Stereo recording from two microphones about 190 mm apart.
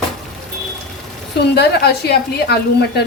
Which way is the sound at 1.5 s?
55° left (ahead or behind).